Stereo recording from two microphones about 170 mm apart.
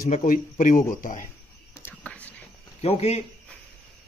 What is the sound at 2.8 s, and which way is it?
Speech, 35° left (ahead or behind).